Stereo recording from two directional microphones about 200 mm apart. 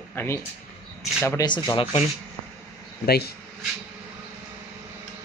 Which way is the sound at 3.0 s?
50° left (ahead or behind).